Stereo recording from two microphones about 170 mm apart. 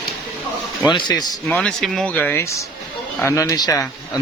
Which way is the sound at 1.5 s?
5° left (ahead or behind).